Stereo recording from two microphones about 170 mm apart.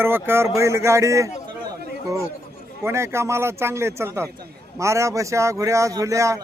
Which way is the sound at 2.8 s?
15° right (ahead or behind).